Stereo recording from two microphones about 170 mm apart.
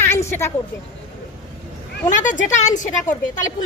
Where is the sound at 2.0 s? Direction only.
50° left (ahead or behind).